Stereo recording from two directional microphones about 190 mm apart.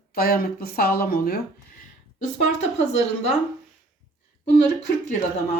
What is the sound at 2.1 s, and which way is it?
Speech, 35° left (ahead or behind).